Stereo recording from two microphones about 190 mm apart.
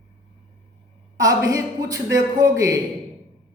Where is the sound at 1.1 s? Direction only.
20° right (ahead or behind).